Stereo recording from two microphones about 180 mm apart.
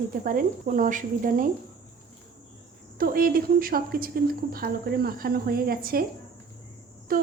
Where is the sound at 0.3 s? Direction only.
50° right (ahead or behind).